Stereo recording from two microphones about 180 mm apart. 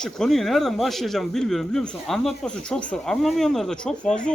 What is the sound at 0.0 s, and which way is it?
A man's voice, centre (ahead or behind).